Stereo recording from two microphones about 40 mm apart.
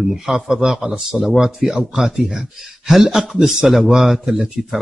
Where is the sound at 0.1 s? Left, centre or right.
Centre.